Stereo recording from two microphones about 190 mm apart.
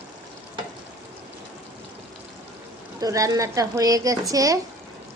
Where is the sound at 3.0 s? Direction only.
15° right (ahead or behind).